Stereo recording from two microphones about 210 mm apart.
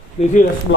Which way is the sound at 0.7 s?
55° left (ahead or behind).